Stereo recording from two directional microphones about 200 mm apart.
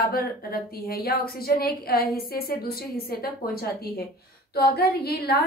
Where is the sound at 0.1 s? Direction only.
50° left (ahead or behind).